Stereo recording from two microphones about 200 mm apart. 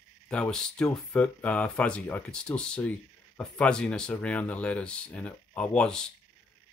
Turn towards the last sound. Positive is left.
turn(degrees=5)  # may be behind; listen again after turning